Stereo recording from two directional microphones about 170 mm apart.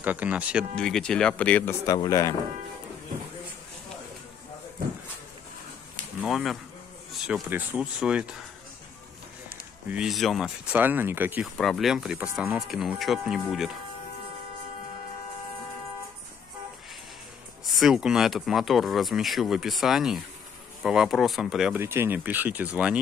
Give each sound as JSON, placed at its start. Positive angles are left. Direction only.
{"t": 0.0, "sound": "speech", "side_deg": -10}
{"t": 0.7, "sound": "speech", "side_deg": 5}
{"t": 1.9, "sound": "speech", "side_deg": 20}
{"t": 6.2, "sound": "speech", "side_deg": 0}
{"t": 7.1, "sound": "a sound", "side_deg": 0}
{"t": 7.4, "sound": "speech", "side_deg": -10}
{"t": 9.8, "sound": "speech", "side_deg": -5}
{"t": 11.5, "sound": "speech", "side_deg": 0}
{"t": 17.7, "sound": "speech", "side_deg": 0}
{"t": 21.7, "sound": "speech", "side_deg": -15}